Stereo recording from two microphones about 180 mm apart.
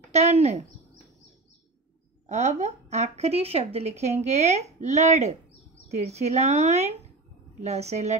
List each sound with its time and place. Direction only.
0.1 s speech: 40° right (ahead or behind)
2.2 s speech: 40° right (ahead or behind)